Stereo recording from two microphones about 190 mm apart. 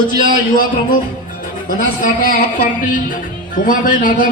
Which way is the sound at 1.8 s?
45° left (ahead or behind).